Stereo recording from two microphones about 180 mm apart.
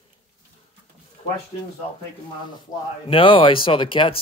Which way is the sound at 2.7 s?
25° left (ahead or behind).